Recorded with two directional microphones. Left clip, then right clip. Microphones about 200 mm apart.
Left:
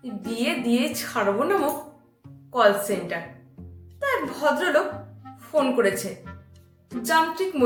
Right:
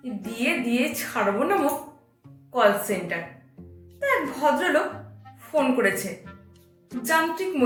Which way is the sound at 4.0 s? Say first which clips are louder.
Right 1 dB; 15° left (ahead or behind).